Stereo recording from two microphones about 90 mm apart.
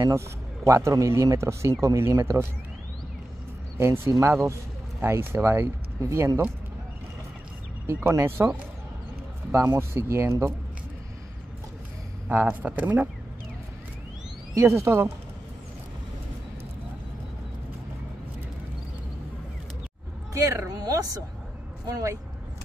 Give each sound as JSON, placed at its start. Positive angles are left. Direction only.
{"t": 0.7, "sound": "speech", "side_deg": -30}
{"t": 3.7, "sound": "speech", "side_deg": -25}
{"t": 7.8, "sound": "speech", "side_deg": -30}
{"t": 12.3, "sound": "speech", "side_deg": -20}
{"t": 14.5, "sound": "speech", "side_deg": -35}
{"t": 20.6, "sound": "speech", "side_deg": -45}